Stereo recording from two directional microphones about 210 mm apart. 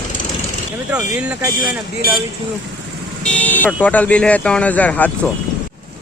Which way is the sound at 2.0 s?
45° left (ahead or behind).